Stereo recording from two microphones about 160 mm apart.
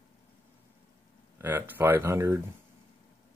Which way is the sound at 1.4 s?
15° right (ahead or behind).